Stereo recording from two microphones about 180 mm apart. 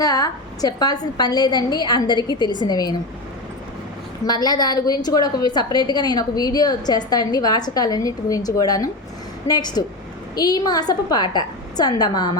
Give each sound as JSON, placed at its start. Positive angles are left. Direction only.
{"t": 0.0, "sound": "a woman's voice", "side_deg": 20}
{"t": 4.3, "sound": "a woman's voice", "side_deg": 25}